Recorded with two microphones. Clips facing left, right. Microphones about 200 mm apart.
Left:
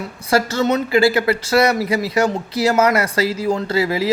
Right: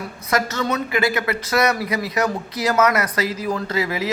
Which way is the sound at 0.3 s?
30° left (ahead or behind).